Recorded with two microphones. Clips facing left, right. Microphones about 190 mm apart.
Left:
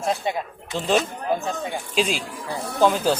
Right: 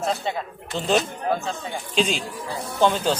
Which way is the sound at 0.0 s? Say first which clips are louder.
Left 1 dB; 15° left (ahead or behind).